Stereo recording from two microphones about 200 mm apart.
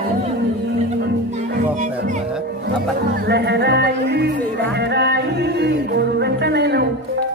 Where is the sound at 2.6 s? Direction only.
55° right (ahead or behind).